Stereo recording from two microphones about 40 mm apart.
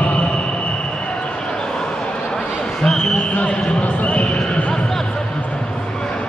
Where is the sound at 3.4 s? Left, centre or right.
Left.